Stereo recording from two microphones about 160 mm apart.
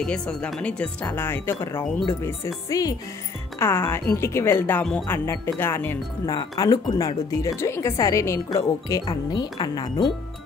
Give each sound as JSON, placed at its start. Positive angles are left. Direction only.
{"t": 0.0, "sound": "a woman's voice", "side_deg": 5}